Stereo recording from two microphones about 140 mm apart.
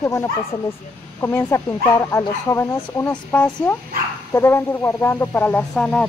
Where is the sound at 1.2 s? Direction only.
20° left (ahead or behind).